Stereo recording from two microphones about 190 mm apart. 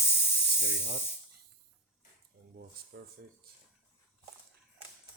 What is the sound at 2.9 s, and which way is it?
Speech, 60° right (ahead or behind).